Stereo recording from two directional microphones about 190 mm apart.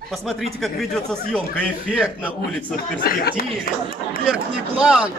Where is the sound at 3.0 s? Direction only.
50° left (ahead or behind).